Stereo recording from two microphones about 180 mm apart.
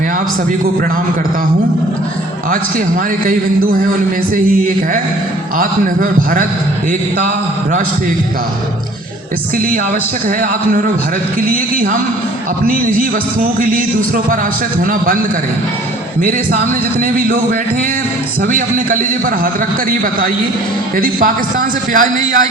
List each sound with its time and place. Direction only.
3.2 s a man's voice: 50° right (ahead or behind)
5.5 s a man's voice: 50° right (ahead or behind)
10.2 s a man's voice: 50° right (ahead or behind)
17.0 s a man's voice: 50° right (ahead or behind)
20.9 s a man's voice: 50° right (ahead or behind)